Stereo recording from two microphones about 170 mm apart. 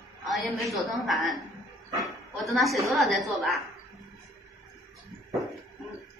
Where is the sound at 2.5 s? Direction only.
Centre (ahead or behind).